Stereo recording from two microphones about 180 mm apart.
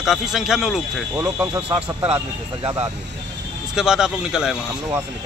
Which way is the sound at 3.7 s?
5° right (ahead or behind).